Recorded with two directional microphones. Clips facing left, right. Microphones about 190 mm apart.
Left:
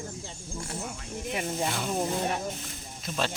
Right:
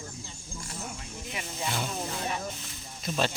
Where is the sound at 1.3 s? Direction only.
50° left (ahead or behind).